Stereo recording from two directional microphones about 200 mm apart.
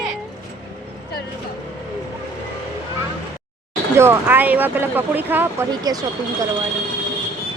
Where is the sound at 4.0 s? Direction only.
10° right (ahead or behind).